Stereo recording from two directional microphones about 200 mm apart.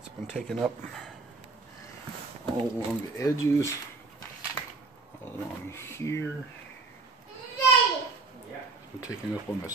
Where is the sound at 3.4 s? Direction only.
15° left (ahead or behind).